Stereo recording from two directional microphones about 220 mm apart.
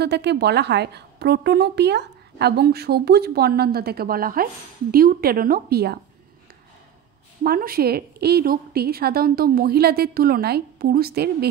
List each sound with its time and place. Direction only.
0.0 s a woman's voice: 50° right (ahead or behind)
7.4 s a woman's voice: 40° right (ahead or behind)